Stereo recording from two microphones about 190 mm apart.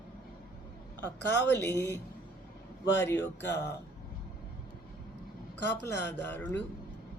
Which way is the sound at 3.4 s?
60° left (ahead or behind).